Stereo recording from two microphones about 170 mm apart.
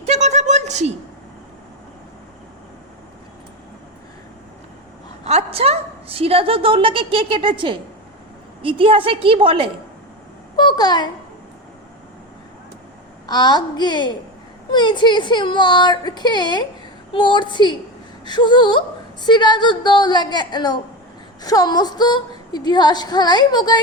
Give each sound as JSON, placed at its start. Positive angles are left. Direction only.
{"t": 0.0, "sound": "a sound", "side_deg": -40}
{"t": 5.2, "sound": "a woman's voice", "side_deg": -35}
{"t": 10.6, "sound": "speech", "side_deg": 25}
{"t": 13.2, "sound": "speech", "side_deg": 25}